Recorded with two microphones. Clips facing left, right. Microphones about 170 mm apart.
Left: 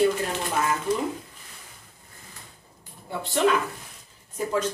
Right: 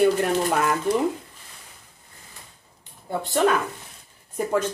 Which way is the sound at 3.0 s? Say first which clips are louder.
Right 2 dB; 45° right (ahead or behind).